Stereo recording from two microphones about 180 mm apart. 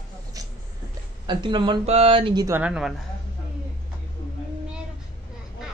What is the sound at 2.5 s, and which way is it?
Speech, 5° right (ahead or behind).